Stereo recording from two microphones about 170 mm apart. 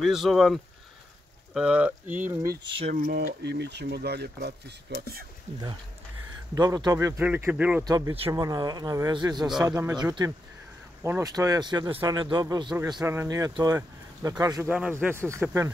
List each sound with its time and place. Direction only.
0.0 s speech: centre (ahead or behind)
2.9 s speech: 70° right (ahead or behind)
5.5 s speech: 40° right (ahead or behind)
6.5 s speech: 20° right (ahead or behind)
7.8 s speech: 20° right (ahead or behind)
14.7 s speech: 5° right (ahead or behind)